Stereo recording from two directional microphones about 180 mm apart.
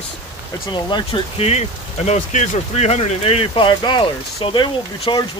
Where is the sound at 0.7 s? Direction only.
25° left (ahead or behind).